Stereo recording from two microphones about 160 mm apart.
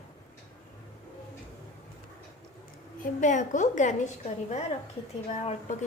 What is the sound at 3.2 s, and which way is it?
A woman's voice, 50° left (ahead or behind).